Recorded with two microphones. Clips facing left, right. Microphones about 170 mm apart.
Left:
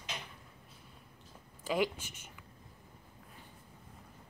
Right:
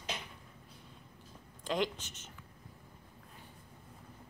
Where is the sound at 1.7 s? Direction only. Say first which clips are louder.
Left 2 dB; 10° left (ahead or behind).